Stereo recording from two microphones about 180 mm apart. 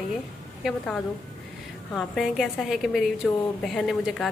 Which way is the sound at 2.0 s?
Centre (ahead or behind).